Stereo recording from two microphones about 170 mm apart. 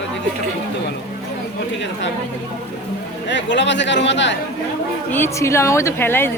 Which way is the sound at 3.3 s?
90° left.